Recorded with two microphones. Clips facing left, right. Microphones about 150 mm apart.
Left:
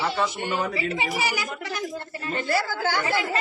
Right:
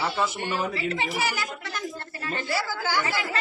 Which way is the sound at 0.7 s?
15° left (ahead or behind).